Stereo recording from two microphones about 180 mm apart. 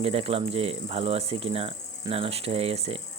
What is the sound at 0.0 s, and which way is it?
Speech, 35° right (ahead or behind).